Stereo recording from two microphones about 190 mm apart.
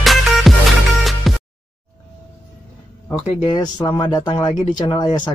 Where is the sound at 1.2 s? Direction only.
Centre (ahead or behind).